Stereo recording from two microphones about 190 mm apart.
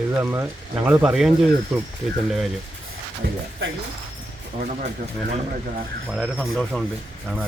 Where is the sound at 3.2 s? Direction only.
60° right (ahead or behind).